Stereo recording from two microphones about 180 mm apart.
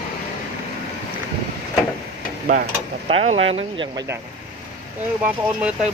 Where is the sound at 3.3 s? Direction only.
35° right (ahead or behind).